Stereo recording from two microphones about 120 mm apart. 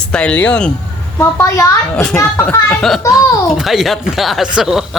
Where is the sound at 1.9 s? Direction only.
10° left (ahead or behind).